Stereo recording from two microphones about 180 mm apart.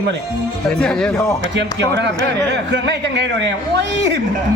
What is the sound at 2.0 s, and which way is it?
A man's voice, 75° right (ahead or behind).